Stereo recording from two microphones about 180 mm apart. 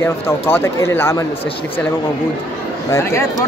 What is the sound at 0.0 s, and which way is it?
Speech, 15° left (ahead or behind).